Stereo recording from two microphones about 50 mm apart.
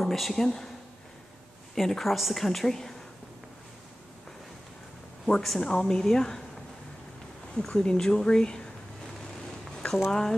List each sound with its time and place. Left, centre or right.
0.0 s speech: centre
1.8 s a woman's voice: centre
5.2 s speech: centre
7.5 s speech: centre
9.8 s a sound: centre